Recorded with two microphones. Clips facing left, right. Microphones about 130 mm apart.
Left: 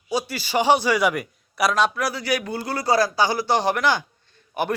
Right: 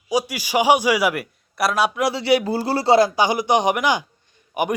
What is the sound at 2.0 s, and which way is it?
A man's voice, 25° right (ahead or behind).